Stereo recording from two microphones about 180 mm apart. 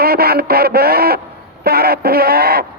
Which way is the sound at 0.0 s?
55° right (ahead or behind).